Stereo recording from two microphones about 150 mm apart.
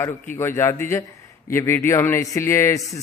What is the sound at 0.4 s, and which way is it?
A man's voice, 15° left (ahead or behind).